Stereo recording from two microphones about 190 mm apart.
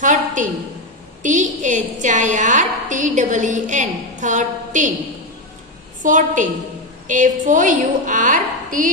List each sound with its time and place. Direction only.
0.0 s a woman's voice: 40° right (ahead or behind)
6.0 s a woman's voice: 40° right (ahead or behind)